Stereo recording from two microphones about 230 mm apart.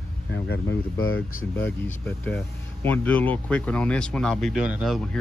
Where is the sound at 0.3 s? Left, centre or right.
Left.